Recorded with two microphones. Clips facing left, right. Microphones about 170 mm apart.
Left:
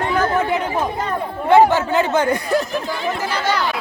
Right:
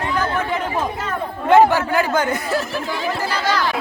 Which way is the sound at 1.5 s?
15° left (ahead or behind).